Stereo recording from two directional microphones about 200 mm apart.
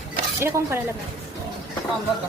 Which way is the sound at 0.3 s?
10° right (ahead or behind).